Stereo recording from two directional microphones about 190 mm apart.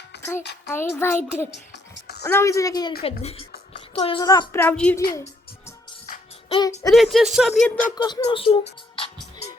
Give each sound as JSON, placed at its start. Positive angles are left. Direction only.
{"t": 0.7, "sound": "a woman's voice", "side_deg": 10}
{"t": 1.7, "sound": "music", "side_deg": 60}
{"t": 2.2, "sound": "a woman's voice", "side_deg": 15}
{"t": 3.0, "sound": "a woman's voice", "side_deg": 30}
{"t": 4.2, "sound": "a woman's voice", "side_deg": 20}
{"t": 6.5, "sound": "speech", "side_deg": 20}
{"t": 6.9, "sound": "speech", "side_deg": 0}
{"t": 7.9, "sound": "speech", "side_deg": 25}